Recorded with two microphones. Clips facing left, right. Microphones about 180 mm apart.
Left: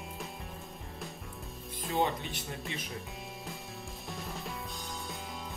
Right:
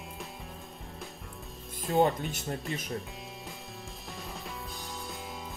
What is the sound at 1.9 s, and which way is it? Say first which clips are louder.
Speech: right 5 dB; 45° right (ahead or behind).